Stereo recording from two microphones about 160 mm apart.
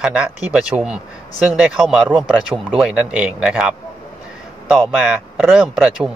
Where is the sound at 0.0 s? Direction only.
5° right (ahead or behind).